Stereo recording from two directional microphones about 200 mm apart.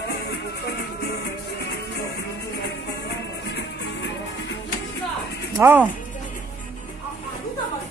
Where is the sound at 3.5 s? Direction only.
60° left (ahead or behind).